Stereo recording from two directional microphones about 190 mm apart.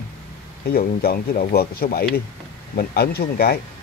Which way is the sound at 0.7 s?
50° left (ahead or behind).